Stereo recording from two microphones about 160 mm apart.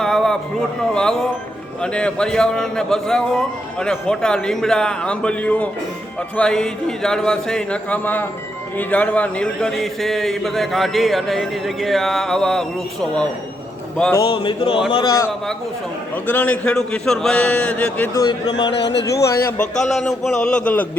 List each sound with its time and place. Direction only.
0.0 s a sound: centre (ahead or behind)
0.9 s a man's voice: 5° left (ahead or behind)
14.4 s speech: 30° left (ahead or behind)
16.1 s a man's voice: 10° left (ahead or behind)
18.3 s speech: 25° left (ahead or behind)
18.7 s speech: 90° left
19.2 s speech: 20° left (ahead or behind)
19.5 s a man's voice: 5° left (ahead or behind)